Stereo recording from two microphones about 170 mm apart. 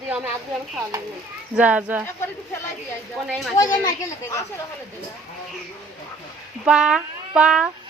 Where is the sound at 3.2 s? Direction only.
5° right (ahead or behind).